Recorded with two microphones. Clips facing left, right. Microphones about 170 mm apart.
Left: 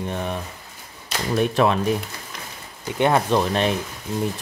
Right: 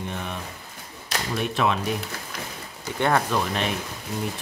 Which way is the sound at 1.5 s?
45° left (ahead or behind).